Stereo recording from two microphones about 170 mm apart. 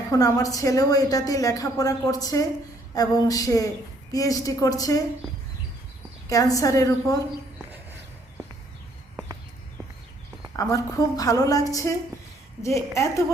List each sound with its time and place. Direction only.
0.1 s a woman's voice: 20° left (ahead or behind)
6.2 s a woman's voice: 20° left (ahead or behind)
10.6 s a woman's voice: 20° left (ahead or behind)